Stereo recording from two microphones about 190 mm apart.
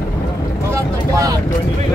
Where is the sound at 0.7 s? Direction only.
15° right (ahead or behind).